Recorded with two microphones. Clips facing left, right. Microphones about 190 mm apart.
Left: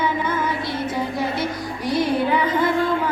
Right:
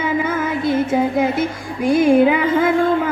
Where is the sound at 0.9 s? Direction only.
50° right (ahead or behind).